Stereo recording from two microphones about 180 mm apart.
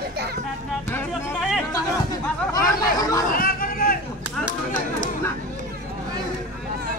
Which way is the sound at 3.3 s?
55° left (ahead or behind).